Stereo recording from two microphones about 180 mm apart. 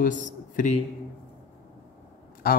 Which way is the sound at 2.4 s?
55° left (ahead or behind).